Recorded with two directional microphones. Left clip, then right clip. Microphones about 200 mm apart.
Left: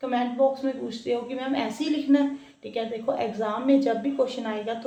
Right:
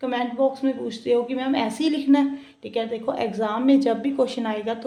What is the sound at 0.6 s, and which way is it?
Speech, 45° right (ahead or behind).